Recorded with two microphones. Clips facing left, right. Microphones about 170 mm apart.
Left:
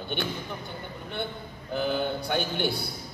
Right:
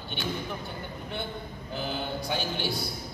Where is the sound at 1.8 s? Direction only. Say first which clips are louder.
Left 5 dB; 55° left (ahead or behind).